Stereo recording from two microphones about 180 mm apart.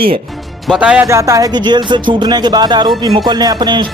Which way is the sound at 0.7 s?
5° right (ahead or behind).